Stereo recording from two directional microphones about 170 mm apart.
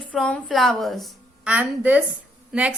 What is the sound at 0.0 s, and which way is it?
A woman's voice, 5° left (ahead or behind).